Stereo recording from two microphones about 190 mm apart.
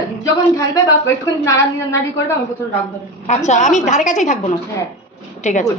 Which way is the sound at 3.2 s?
35° left (ahead or behind).